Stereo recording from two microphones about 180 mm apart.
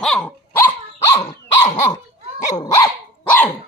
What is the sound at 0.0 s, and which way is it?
Dog, 5° left (ahead or behind).